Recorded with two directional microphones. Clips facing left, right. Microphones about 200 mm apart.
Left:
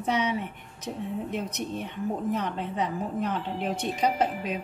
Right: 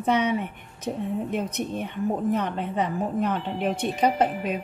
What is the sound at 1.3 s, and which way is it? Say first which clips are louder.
A woman's voice: right 4 dB; 55° right (ahead or behind).